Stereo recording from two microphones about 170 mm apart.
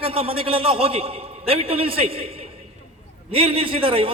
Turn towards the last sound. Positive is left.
turn(degrees=-35)  # may be behind; listen again after turning